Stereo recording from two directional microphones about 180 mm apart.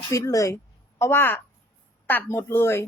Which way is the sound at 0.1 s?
20° left (ahead or behind).